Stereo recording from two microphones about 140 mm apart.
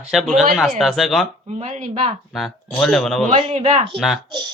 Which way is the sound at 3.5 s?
50° right (ahead or behind).